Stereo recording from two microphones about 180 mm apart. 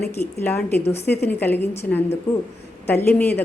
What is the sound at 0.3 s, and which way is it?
Speech, 10° left (ahead or behind).